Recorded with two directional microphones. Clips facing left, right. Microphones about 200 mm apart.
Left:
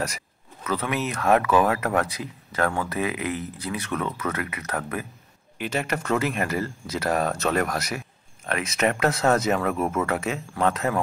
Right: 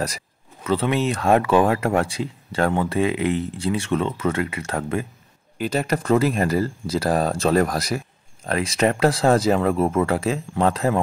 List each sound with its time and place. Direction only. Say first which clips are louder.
0.7 s speech: right 6 dB; 30° right (ahead or behind)